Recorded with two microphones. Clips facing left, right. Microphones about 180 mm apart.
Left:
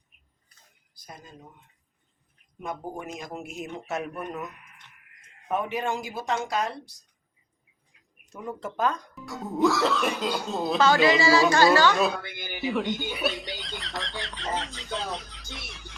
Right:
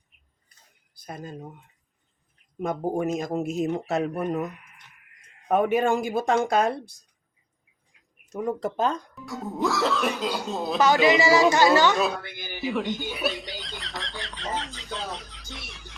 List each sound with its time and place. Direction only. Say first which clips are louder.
0.9 s speech: right 9 dB; 55° right (ahead or behind)
2.6 s speech: right 9 dB; 45° right (ahead or behind)
5.5 s speech: right 7 dB; 50° right (ahead or behind)
8.3 s speech: right 7 dB; 40° right (ahead or behind)
8.7 s speech: left 2 dB; 25° right (ahead or behind)
9.1 s speech: even; centre (ahead or behind)
11.0 s speech: right 2 dB; 20° right (ahead or behind)
12.5 s a sound: even; centre (ahead or behind)